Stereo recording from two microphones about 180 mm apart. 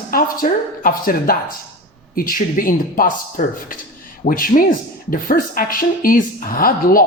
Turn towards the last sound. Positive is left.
turn(degrees=55)  # may be behind; listen again after turning